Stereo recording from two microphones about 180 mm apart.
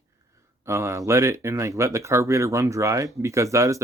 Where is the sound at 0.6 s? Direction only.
15° right (ahead or behind).